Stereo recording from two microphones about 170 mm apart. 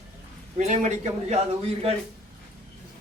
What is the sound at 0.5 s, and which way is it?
Speech, 45° right (ahead or behind).